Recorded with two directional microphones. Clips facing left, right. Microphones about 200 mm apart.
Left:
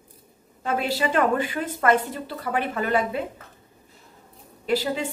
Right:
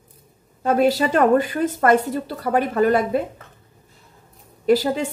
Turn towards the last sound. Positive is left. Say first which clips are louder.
# right 7 dB
turn(degrees=-45)  # may be behind; listen again after turning